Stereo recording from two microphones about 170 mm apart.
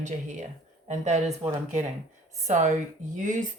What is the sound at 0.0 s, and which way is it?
A woman's voice, 45° right (ahead or behind).